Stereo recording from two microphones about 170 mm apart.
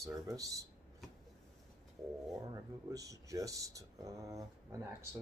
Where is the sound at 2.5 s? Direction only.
20° right (ahead or behind).